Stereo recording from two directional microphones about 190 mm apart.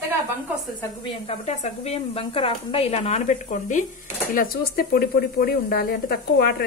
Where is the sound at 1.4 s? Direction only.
35° left (ahead or behind).